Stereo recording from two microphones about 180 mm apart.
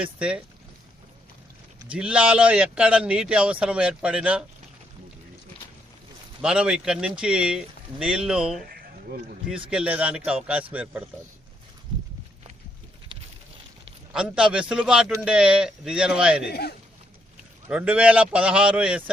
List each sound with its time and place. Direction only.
0.0 s a man's voice: 5° right (ahead or behind)
1.9 s a man's voice: 5° right (ahead or behind)
6.4 s speech: 5° right (ahead or behind)
8.6 s a sound: 55° right (ahead or behind)
9.6 s a man's voice: 5° right (ahead or behind)
14.1 s speech: 5° right (ahead or behind)
16.5 s speech: 60° left (ahead or behind)
17.7 s a man's voice: 5° right (ahead or behind)